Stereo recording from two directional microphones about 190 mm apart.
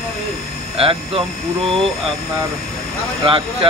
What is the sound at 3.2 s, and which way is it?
Speech, 25° right (ahead or behind).